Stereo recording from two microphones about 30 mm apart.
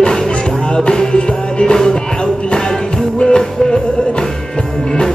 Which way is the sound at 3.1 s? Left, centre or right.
Left.